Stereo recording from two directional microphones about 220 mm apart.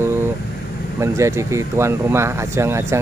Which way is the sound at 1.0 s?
15° right (ahead or behind).